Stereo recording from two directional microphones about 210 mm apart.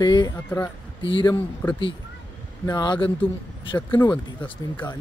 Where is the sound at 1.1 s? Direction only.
25° left (ahead or behind).